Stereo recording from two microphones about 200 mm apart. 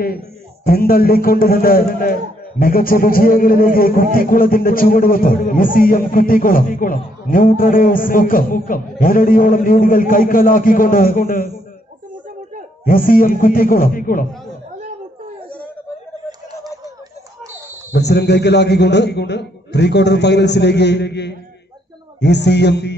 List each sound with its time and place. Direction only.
0.7 s a man's voice: 50° left (ahead or behind)
12.8 s a man's voice: 45° left (ahead or behind)
17.9 s a man's voice: 55° left (ahead or behind)